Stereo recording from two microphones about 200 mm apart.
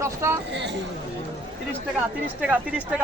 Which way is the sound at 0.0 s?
15° right (ahead or behind).